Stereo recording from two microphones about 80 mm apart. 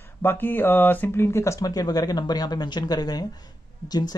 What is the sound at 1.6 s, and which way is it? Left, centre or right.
Speech, left.